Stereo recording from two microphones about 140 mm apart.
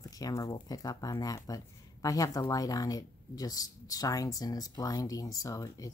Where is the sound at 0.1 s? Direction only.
25° left (ahead or behind).